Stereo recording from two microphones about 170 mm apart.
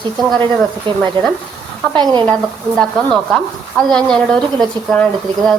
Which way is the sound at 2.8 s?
5° left (ahead or behind).